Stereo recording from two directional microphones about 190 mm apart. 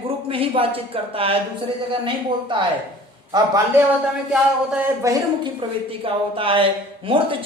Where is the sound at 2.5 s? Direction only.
25° right (ahead or behind).